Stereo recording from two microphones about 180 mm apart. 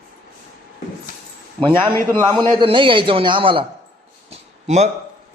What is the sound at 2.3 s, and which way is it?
A man's voice, 25° right (ahead or behind).